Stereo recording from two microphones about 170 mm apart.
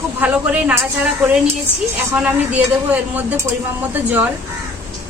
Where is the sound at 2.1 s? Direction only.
10° right (ahead or behind).